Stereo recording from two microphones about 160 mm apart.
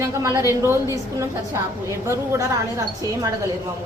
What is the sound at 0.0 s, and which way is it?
A woman's voice, 20° right (ahead or behind).